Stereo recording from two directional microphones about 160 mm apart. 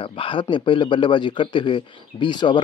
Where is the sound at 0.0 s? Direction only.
30° left (ahead or behind).